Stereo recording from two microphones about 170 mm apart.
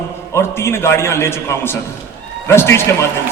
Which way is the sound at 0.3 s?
15° left (ahead or behind).